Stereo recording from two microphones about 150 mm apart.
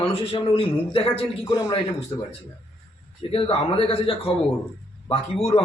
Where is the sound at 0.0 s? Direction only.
40° left (ahead or behind).